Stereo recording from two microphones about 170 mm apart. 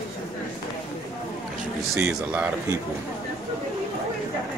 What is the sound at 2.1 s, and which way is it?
Speech, 5° right (ahead or behind).